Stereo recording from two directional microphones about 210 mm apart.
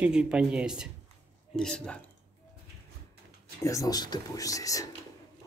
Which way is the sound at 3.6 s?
15° left (ahead or behind).